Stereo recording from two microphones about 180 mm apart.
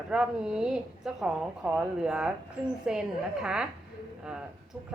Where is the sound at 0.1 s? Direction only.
5° right (ahead or behind).